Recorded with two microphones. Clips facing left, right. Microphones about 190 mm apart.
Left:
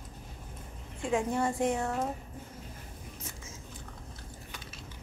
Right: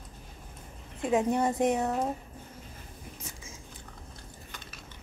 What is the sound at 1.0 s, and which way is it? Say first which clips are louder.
A woman's voice: right 3 dB; 20° right (ahead or behind).